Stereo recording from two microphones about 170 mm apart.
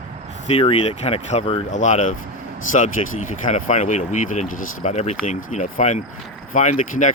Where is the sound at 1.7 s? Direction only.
45° left (ahead or behind).